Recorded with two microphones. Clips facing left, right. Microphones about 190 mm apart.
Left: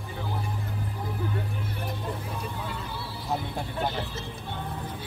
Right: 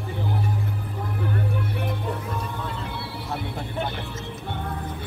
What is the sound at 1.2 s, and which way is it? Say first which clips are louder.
Vehicle: right 7 dB; 65° right (ahead or behind).